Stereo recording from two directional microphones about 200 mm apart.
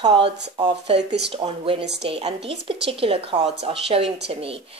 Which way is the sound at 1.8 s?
55° right (ahead or behind).